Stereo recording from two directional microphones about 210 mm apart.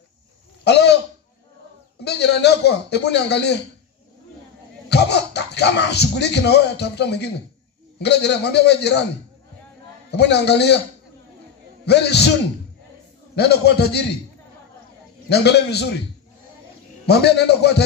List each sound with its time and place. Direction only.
0.7 s speech: 55° left (ahead or behind)
2.0 s speech: 50° left (ahead or behind)
4.8 s speech: 50° left (ahead or behind)
10.1 s speech: 50° left (ahead or behind)
11.8 s speech: 50° left (ahead or behind)
13.4 s speech: 50° left (ahead or behind)
15.2 s speech: 50° left (ahead or behind)
17.0 s speech: 50° left (ahead or behind)